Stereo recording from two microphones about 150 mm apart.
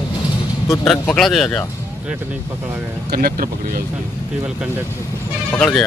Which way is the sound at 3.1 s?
80° right.